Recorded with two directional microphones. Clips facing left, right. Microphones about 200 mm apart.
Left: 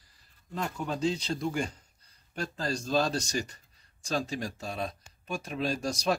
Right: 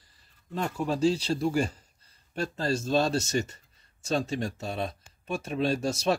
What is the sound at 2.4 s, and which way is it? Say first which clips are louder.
Speech: right 4 dB; 25° right (ahead or behind).